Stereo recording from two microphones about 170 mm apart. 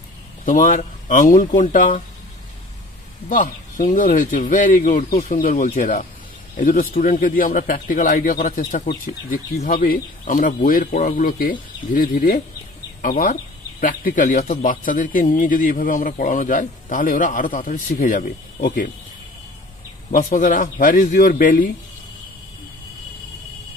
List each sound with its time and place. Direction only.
0.5 s speech: 50° left (ahead or behind)
3.3 s speech: 50° left (ahead or behind)
20.1 s speech: 50° left (ahead or behind)